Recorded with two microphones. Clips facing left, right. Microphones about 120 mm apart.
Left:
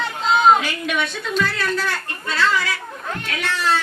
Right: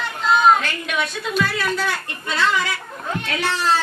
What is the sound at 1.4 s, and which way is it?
Speech, 10° right (ahead or behind).